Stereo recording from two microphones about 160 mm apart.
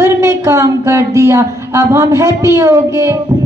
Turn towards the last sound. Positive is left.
turn(degrees=-20)  # may be behind; listen again after turning